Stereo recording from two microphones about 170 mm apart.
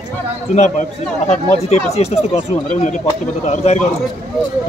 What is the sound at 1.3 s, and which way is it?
Speech, 40° left (ahead or behind).